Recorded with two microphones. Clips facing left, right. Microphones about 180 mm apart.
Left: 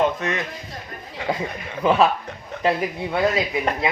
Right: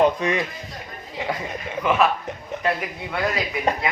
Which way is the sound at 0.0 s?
15° right (ahead or behind).